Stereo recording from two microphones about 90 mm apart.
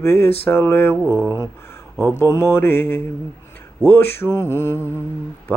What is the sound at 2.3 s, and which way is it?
Mantra, 30° left (ahead or behind).